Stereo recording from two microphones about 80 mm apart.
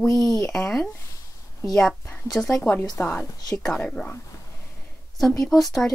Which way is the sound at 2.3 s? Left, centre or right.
Centre.